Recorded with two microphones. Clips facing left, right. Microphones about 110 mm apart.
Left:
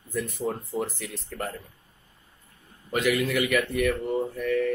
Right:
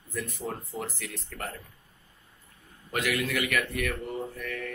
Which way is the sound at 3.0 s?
15° left (ahead or behind).